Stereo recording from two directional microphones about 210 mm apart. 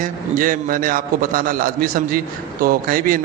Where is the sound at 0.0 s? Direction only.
40° right (ahead or behind).